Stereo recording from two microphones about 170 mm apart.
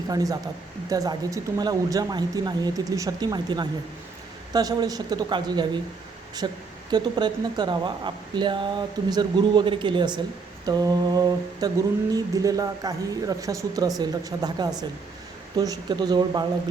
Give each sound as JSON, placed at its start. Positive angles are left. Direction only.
{"t": 0.1, "sound": "speech", "side_deg": -20}